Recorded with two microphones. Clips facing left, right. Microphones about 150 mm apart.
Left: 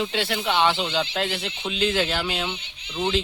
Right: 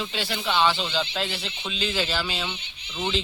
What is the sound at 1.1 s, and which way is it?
Speech, 60° left (ahead or behind).